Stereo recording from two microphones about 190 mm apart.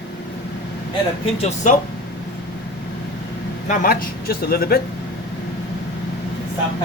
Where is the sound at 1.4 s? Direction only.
40° left (ahead or behind).